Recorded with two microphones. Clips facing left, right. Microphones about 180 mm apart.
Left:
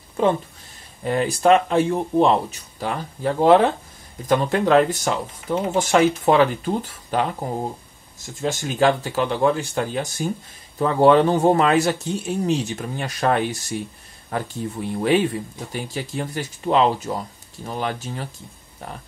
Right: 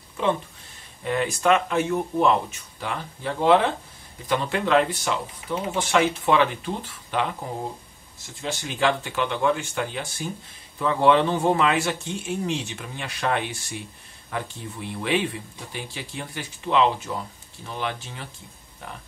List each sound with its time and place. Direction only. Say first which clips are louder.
1.0 s speech: left 4 dB; 35° left (ahead or behind)
8.4 s speech: left 6 dB; 45° left (ahead or behind)